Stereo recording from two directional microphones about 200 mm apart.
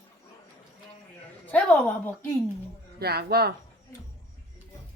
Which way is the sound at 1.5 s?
5° left (ahead or behind).